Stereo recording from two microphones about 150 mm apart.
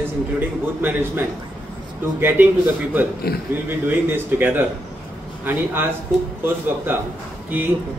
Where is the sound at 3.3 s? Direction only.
90° left.